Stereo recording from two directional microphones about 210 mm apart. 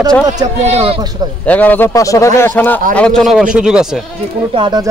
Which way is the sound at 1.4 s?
5° left (ahead or behind).